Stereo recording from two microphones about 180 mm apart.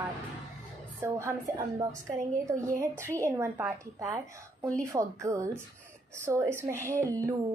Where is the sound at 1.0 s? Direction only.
15° right (ahead or behind).